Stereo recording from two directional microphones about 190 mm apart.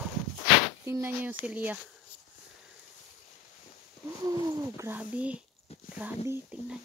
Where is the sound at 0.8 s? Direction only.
10° right (ahead or behind).